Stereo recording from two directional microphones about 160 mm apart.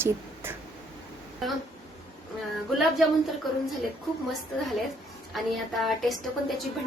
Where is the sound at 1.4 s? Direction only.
Centre (ahead or behind).